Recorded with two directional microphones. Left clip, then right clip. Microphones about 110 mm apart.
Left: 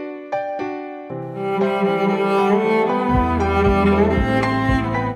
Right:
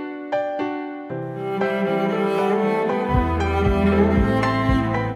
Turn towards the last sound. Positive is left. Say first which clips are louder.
# left 1 dB
turn(degrees=0)  # may be behind; listen again after turning